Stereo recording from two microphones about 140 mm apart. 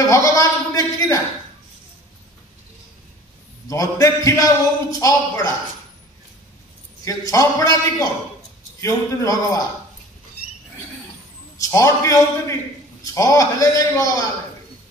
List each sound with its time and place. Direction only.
0.0 s a man's voice: 25° left (ahead or behind)
3.6 s a man's voice: 25° left (ahead or behind)
7.1 s a man's voice: 25° left (ahead or behind)
11.5 s a man's voice: 25° left (ahead or behind)